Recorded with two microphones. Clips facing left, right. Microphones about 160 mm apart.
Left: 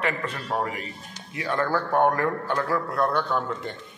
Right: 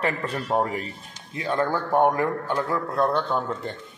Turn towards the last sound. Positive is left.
turn(degrees=-25)  # may be behind; listen again after turning